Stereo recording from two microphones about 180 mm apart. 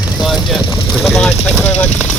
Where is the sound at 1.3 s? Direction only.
35° left (ahead or behind).